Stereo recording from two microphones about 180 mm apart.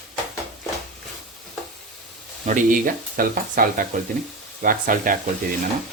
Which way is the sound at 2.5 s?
45° right (ahead or behind).